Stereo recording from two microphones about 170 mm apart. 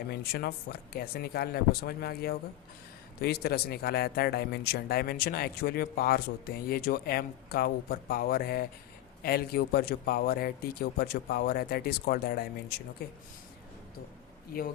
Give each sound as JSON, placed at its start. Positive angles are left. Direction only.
{"t": 0.1, "sound": "a man's voice", "side_deg": 65}